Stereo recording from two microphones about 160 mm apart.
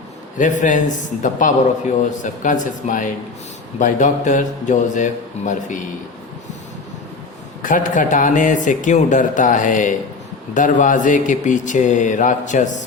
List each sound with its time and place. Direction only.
0.3 s speech: 50° left (ahead or behind)
7.6 s speech: 55° left (ahead or behind)